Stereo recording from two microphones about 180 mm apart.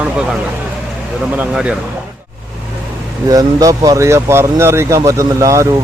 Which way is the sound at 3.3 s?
20° right (ahead or behind).